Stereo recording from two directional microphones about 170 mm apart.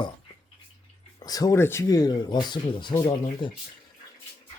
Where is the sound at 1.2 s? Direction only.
20° left (ahead or behind).